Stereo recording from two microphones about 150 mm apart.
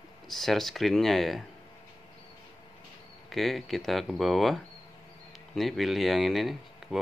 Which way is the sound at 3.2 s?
Centre (ahead or behind).